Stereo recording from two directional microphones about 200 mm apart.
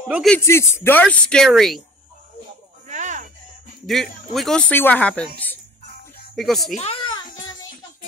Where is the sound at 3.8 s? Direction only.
Centre (ahead or behind).